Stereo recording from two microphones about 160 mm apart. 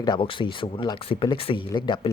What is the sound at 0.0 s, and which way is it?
Speech, 30° left (ahead or behind).